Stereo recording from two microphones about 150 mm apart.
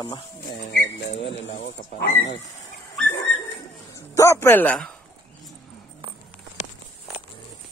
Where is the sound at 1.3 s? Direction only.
80° left.